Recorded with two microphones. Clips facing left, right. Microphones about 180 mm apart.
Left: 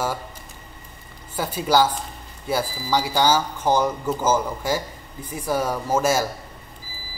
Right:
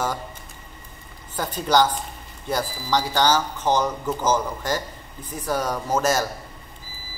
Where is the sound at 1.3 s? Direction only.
10° left (ahead or behind).